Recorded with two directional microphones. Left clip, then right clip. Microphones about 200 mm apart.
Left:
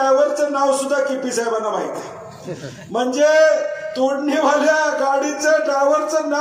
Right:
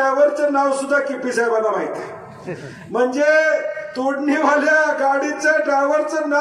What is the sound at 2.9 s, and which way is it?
Speech, 20° right (ahead or behind).